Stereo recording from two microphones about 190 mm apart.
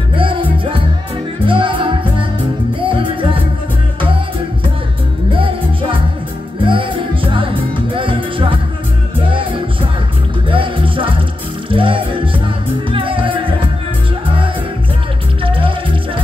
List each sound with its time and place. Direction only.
0.1 s music: 25° right (ahead or behind)
5.3 s music: 25° right (ahead or behind)
15.4 s music: 25° right (ahead or behind)